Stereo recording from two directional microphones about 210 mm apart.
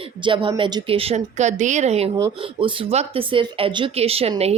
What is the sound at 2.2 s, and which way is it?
A woman's voice, 20° right (ahead or behind).